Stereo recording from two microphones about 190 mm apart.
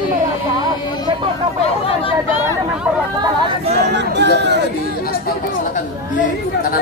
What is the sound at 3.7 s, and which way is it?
Chatter, 65° right (ahead or behind).